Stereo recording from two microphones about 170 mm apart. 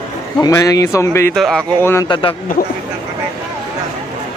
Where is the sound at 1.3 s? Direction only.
5° left (ahead or behind).